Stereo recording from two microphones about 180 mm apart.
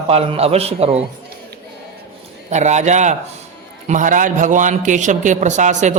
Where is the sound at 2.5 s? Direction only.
40° right (ahead or behind).